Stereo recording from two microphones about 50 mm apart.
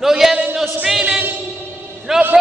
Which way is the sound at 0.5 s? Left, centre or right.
Centre.